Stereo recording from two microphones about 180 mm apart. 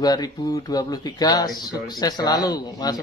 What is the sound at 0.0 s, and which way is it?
Speech, 20° left (ahead or behind).